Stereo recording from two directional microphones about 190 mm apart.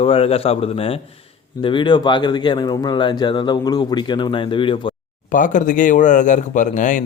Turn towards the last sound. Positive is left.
turn(degrees=40)  # may be behind; listen again after turning